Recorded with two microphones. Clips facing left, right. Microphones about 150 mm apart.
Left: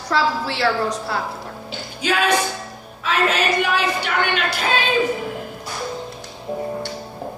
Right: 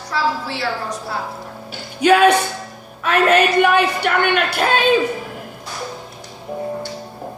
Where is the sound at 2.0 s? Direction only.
60° right (ahead or behind).